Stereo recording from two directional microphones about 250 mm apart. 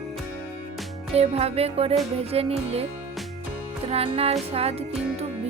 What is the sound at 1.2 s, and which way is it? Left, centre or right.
Music, right.